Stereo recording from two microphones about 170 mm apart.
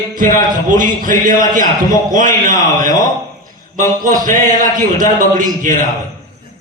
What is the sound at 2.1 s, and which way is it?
A man's voice, 50° right (ahead or behind).